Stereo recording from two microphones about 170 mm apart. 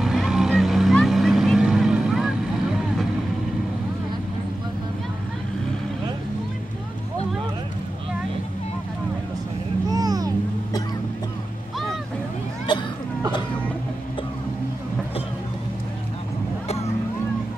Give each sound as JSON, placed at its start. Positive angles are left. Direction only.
{"t": 0.0, "sound": "vehicle", "side_deg": 0}
{"t": 9.8, "sound": "vehicle", "side_deg": -20}
{"t": 12.7, "sound": "a sound", "side_deg": 25}